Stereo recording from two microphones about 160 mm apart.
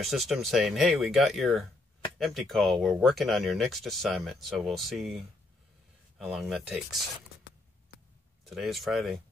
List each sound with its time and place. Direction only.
0.0 s speech: centre (ahead or behind)
8.5 s speech: centre (ahead or behind)